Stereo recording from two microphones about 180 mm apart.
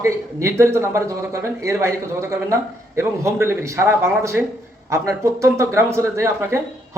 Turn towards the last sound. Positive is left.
turn(degrees=-15)  # may be behind; listen again after turning